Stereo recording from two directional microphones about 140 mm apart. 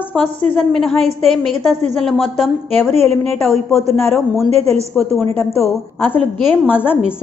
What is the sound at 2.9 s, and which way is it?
Speech, 50° right (ahead or behind).